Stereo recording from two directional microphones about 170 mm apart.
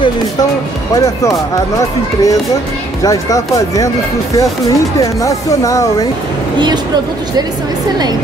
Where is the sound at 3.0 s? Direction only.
20° left (ahead or behind).